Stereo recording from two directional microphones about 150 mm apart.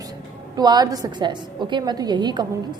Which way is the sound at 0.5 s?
25° right (ahead or behind).